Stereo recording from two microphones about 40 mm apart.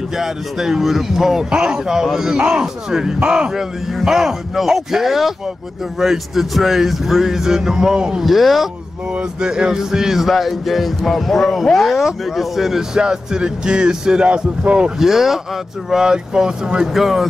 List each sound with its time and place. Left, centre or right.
0.2 s speech: centre
1.5 s speech: centre
3.9 s speech: centre
8.2 s speech: centre
9.1 s speech: right; by 12.0 s centre
12.0 s speech: centre; by 14.9 s right
15.0 s speech: centre
16.8 s speech: centre